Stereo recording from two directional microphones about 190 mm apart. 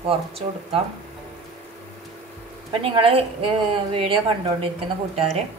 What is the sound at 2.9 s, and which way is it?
A woman's voice, 30° right (ahead or behind).